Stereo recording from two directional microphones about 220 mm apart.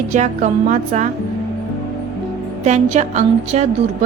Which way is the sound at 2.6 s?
30° right (ahead or behind).